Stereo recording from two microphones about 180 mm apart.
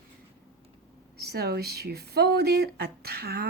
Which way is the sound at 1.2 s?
60° right (ahead or behind).